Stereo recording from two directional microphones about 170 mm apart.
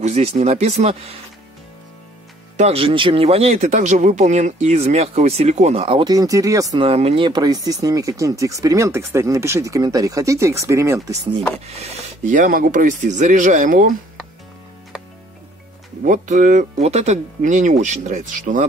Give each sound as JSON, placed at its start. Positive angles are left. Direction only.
{"t": 0.0, "sound": "speech", "side_deg": -40}
{"t": 2.5, "sound": "speech", "side_deg": -40}
{"t": 6.8, "sound": "speech", "side_deg": -35}
{"t": 11.6, "sound": "speech", "side_deg": -35}
{"t": 16.0, "sound": "speech", "side_deg": -50}